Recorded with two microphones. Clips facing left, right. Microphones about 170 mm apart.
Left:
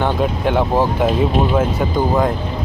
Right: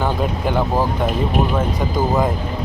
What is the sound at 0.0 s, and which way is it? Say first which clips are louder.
Speech: left 3 dB; centre (ahead or behind).